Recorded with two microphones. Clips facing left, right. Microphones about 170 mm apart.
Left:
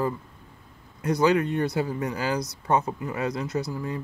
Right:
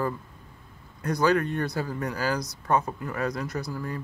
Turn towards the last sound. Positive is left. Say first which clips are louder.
# left 3 dB
turn(degrees=20)  # may be behind; listen again after turning